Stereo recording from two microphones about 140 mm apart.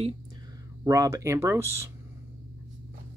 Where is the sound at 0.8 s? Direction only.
25° right (ahead or behind).